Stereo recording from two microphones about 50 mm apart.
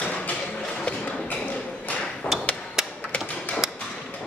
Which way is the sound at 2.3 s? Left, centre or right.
Left.